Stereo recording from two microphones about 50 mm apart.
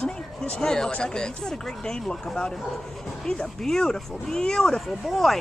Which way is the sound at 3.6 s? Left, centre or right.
Centre.